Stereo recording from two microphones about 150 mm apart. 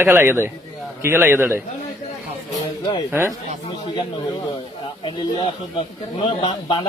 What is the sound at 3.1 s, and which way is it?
Speech, 15° right (ahead or behind).